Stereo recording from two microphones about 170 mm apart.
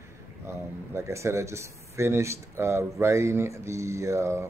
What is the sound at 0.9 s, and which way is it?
Speech, 15° right (ahead or behind).